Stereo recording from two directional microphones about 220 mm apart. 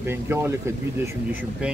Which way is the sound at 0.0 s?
10° right (ahead or behind).